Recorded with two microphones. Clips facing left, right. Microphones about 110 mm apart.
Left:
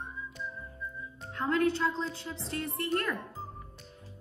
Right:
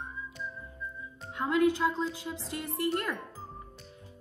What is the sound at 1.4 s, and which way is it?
A woman's voice, 15° right (ahead or behind).